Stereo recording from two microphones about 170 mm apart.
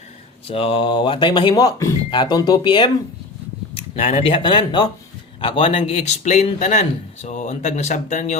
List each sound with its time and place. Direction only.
0.4 s a man's voice: 35° left (ahead or behind)